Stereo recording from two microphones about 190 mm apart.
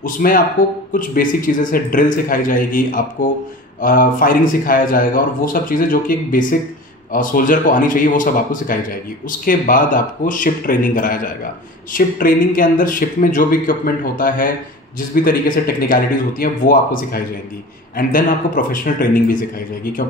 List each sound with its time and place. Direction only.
0.0 s a man's voice: 50° left (ahead or behind)